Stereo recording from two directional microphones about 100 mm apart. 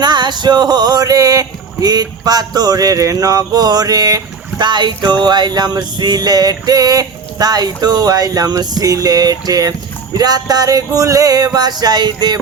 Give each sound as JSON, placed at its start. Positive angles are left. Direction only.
{"t": 0.0, "sound": "speech", "side_deg": -45}